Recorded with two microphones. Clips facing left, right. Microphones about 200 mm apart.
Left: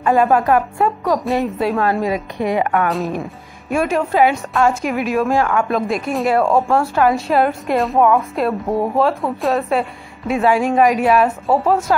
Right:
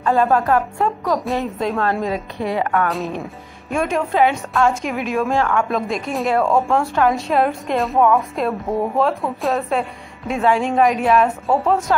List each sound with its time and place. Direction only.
0.0 s a woman's voice: 15° left (ahead or behind)
1.0 s a woman's voice: centre (ahead or behind)
3.7 s a woman's voice: 5° left (ahead or behind)